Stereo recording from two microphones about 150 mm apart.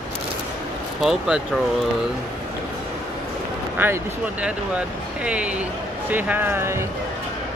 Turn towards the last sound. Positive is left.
turn(degrees=-15)  # may be behind; listen again after turning